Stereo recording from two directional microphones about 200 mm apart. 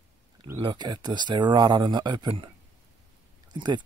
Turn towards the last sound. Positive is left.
turn(degrees=-20)  # may be behind; listen again after turning